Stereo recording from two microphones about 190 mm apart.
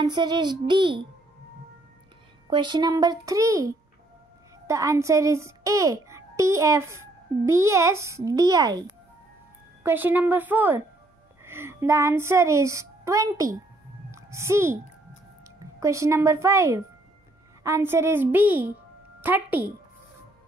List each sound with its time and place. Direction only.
0.0 s a child's voice: 20° right (ahead or behind)
2.5 s a child's voice: 25° right (ahead or behind)